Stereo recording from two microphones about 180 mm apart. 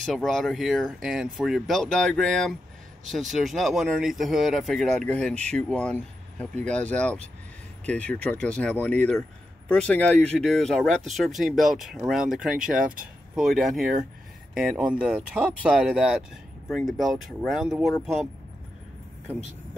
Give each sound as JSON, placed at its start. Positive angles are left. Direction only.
{"t": 0.0, "sound": "speech", "side_deg": 0}
{"t": 12.7, "sound": "speech", "side_deg": -50}
{"t": 13.3, "sound": "speech", "side_deg": 0}